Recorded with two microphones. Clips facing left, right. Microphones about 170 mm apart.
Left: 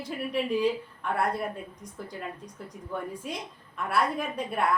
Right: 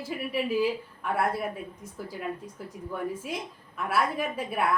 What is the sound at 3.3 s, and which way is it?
A woman's voice, 5° right (ahead or behind).